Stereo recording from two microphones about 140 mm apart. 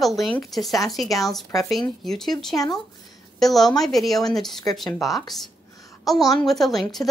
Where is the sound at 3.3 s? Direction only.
Centre (ahead or behind).